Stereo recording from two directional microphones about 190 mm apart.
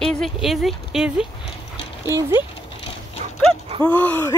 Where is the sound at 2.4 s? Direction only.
30° left (ahead or behind).